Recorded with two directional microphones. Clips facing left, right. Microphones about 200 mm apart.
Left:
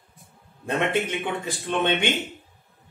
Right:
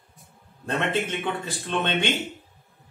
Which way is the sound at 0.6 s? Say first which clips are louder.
Left 2 dB; 15° left (ahead or behind).